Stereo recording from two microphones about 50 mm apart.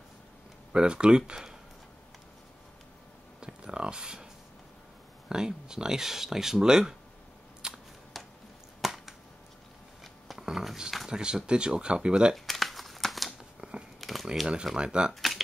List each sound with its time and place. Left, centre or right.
0.7 s speech: centre
3.3 s a sound: centre
5.3 s speech: centre
7.6 s a sound: centre
8.2 s a sound: centre
8.8 s finger snapping: centre
10.5 s speech: centre
11.1 s speech: centre
12.4 s crumpling: centre
13.6 s biting: centre
14.0 s crumpling: centre
14.8 s speech: centre